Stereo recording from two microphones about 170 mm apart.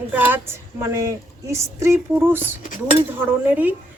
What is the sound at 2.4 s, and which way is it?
Cutlery, 45° left (ahead or behind).